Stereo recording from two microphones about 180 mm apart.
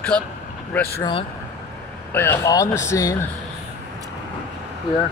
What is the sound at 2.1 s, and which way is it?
Speech, 15° left (ahead or behind).